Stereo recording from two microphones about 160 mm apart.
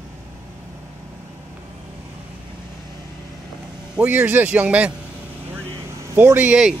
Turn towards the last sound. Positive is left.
turn(degrees=-5)  # may be behind; listen again after turning